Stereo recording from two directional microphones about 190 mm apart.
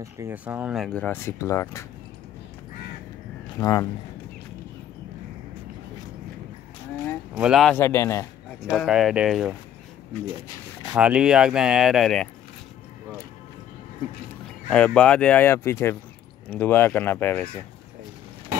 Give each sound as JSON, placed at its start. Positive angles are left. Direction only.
{"t": 0.0, "sound": "speech", "side_deg": -10}
{"t": 3.5, "sound": "speech", "side_deg": 20}
{"t": 7.3, "sound": "speech", "side_deg": 0}
{"t": 7.8, "sound": "speech", "side_deg": 15}
{"t": 8.6, "sound": "speech", "side_deg": -5}
{"t": 10.9, "sound": "speech", "side_deg": -5}
{"t": 14.7, "sound": "speech", "side_deg": 5}